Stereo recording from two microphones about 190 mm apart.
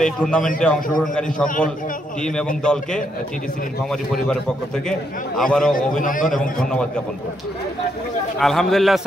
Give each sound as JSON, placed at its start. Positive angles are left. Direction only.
{"t": 0.0, "sound": "a man's voice", "side_deg": 5}
{"t": 2.6, "sound": "a man's voice", "side_deg": 5}
{"t": 5.4, "sound": "a man's voice", "side_deg": 0}
{"t": 5.8, "sound": "a man's voice", "side_deg": 45}
{"t": 8.4, "sound": "a man's voice", "side_deg": 0}